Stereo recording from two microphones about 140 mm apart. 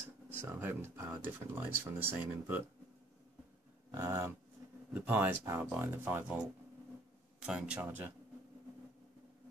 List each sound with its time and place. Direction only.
0.3 s speech: 15° right (ahead or behind)
3.9 s speech: 20° right (ahead or behind)
7.4 s speech: 5° right (ahead or behind)